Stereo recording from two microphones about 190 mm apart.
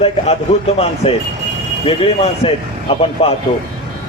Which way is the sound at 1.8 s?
30° left (ahead or behind).